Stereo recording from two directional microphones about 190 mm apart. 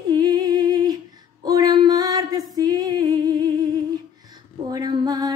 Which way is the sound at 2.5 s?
20° right (ahead or behind).